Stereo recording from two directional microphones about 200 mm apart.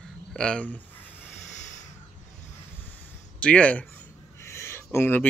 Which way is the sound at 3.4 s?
5° left (ahead or behind).